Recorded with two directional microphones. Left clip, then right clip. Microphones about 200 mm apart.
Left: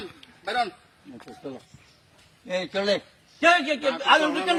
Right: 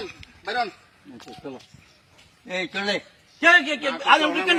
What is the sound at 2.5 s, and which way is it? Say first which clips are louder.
Speech: left 1 dB; 40° left (ahead or behind).